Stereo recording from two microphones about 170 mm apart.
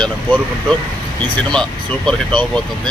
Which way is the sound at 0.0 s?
5° left (ahead or behind).